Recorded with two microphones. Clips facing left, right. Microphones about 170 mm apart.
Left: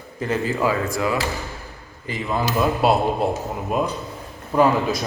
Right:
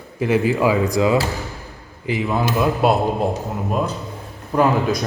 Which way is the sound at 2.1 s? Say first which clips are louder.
Right 3 dB; 5° right (ahead or behind).